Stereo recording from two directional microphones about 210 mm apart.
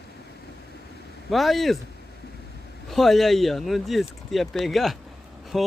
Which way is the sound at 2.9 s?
Centre (ahead or behind).